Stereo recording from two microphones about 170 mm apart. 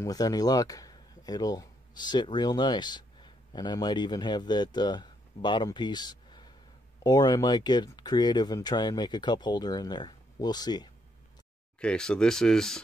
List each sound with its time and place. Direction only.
0.0 s speech: 20° left (ahead or behind)
11.8 s speech: 5° left (ahead or behind)